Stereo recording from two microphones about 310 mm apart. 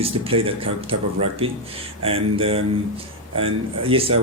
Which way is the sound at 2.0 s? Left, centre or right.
Centre.